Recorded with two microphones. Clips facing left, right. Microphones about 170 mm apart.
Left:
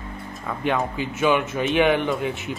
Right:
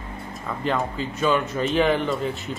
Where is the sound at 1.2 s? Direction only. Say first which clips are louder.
Left 2 dB; 20° left (ahead or behind).